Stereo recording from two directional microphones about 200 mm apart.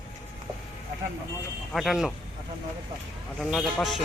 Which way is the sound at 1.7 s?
Centre (ahead or behind).